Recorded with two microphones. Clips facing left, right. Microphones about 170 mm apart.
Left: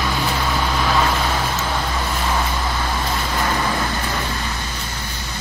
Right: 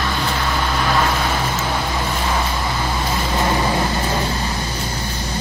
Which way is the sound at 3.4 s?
20° right (ahead or behind).